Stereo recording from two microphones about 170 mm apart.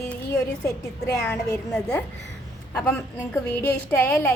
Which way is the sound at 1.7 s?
5° left (ahead or behind).